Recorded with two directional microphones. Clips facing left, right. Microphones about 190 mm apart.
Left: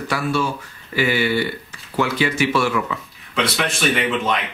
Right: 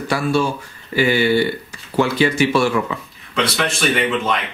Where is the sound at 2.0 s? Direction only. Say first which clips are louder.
Right 4 dB; 30° right (ahead or behind).